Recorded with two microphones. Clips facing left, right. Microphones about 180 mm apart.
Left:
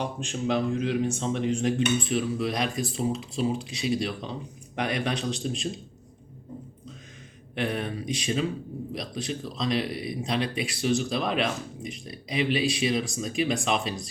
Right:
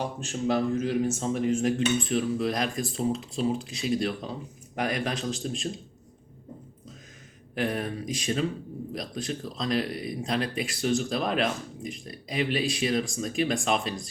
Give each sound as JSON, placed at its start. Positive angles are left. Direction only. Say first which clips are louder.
{"t": 0.0, "sound": "speech", "louder": "even", "side_deg": -5}
{"t": 0.5, "sound": "a man's voice", "louder": "even", "side_deg": -40}
{"t": 1.0, "sound": "speech", "louder": "even", "side_deg": -5}
{"t": 8.0, "sound": "speech", "louder": "left 1 dB", "side_deg": 0}